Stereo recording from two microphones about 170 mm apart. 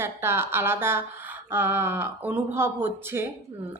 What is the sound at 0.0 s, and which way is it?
Speech, 15° right (ahead or behind).